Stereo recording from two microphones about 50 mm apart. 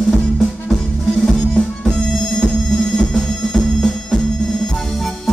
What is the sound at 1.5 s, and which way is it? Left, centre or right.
Music, centre.